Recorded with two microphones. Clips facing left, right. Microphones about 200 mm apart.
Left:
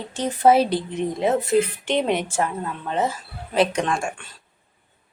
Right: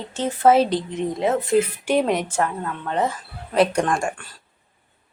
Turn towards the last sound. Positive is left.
turn(degrees=-5)  # may be behind; listen again after turning